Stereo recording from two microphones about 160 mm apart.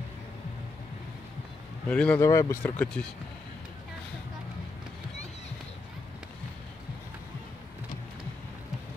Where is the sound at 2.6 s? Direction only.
5° left (ahead or behind).